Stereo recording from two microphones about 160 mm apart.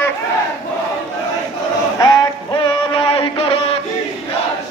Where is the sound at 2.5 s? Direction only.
35° left (ahead or behind).